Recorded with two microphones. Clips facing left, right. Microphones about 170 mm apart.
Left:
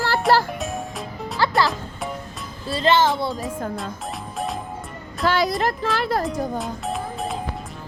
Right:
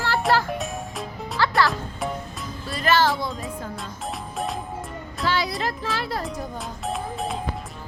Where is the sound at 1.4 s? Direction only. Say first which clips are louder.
Left 1 dB; 20° left (ahead or behind).